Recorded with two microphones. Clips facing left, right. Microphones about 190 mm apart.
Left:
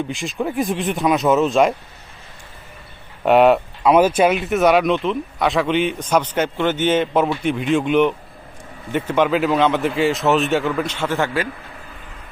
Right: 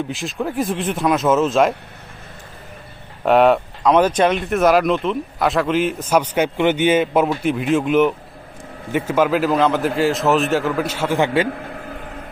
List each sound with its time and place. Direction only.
0.1 s speech: centre (ahead or behind)
3.2 s speech: centre (ahead or behind)
11.4 s a sound: 55° right (ahead or behind)